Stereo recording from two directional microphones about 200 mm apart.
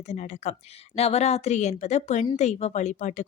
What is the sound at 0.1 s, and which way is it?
Speech, 35° left (ahead or behind).